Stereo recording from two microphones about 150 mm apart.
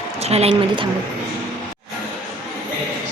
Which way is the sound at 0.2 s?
45° right (ahead or behind).